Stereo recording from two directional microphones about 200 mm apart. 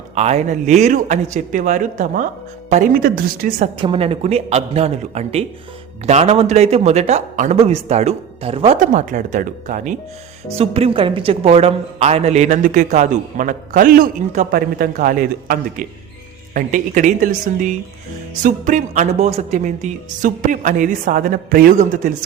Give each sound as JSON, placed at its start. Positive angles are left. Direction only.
{"t": 0.1, "sound": "a woman's voice", "side_deg": -35}
{"t": 3.8, "sound": "a woman's voice", "side_deg": -25}
{"t": 10.6, "sound": "a woman's voice", "side_deg": -30}